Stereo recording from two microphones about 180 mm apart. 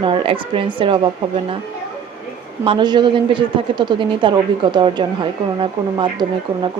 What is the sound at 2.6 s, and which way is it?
A woman's voice, 25° right (ahead or behind).